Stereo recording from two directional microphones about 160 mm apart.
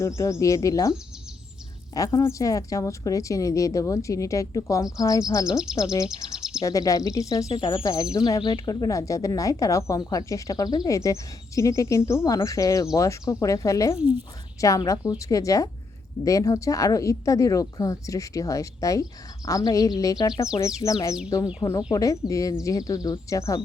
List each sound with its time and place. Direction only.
0.2 s speech: 20° left (ahead or behind)
2.0 s speech: 20° left (ahead or behind)
5.5 s speech: 5° right (ahead or behind)
5.7 s speech: 20° left (ahead or behind)
6.1 s a sound: 5° right (ahead or behind)
6.6 s speech: 20° left (ahead or behind)